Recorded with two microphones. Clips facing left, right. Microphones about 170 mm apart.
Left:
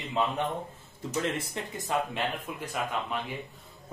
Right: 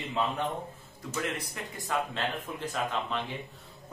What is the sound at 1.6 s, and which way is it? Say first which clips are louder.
Speech: left 4 dB; 25° left (ahead or behind).